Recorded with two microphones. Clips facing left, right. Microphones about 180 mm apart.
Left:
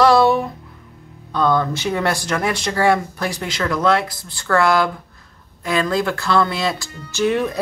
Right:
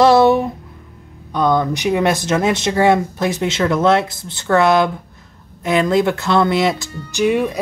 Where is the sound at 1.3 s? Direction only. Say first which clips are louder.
Right 2 dB; 15° right (ahead or behind).